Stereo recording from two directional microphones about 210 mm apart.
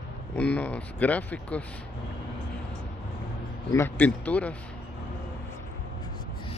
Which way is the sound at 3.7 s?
10° left (ahead or behind).